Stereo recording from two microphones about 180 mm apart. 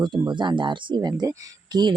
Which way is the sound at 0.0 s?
25° right (ahead or behind).